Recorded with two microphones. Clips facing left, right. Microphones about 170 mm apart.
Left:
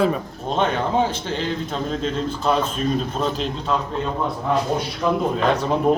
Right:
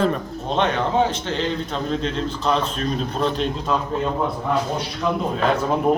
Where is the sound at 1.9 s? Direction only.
5° left (ahead or behind).